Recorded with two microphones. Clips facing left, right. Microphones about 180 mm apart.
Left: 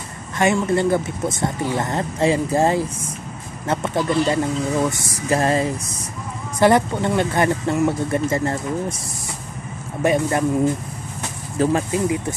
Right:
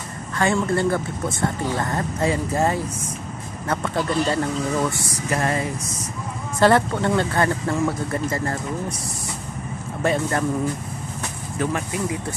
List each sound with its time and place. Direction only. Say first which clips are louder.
0.4 s speech: left 2 dB; 20° left (ahead or behind)
5.3 s speech: left 5 dB; 30° left (ahead or behind)
6.6 s speech: left 1 dB; 15° left (ahead or behind)
10.0 s speech: left 3 dB; 15° left (ahead or behind)
11.5 s speech: left 6 dB; 30° left (ahead or behind)